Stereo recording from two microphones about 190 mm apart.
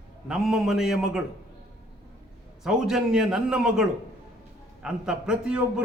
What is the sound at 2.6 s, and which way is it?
A man's voice, 5° right (ahead or behind).